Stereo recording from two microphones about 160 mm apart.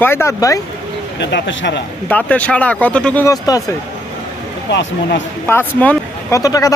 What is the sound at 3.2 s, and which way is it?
Speech, 25° left (ahead or behind).